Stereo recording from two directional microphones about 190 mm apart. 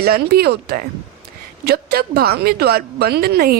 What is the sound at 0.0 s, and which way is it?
A woman's voice, 55° right (ahead or behind).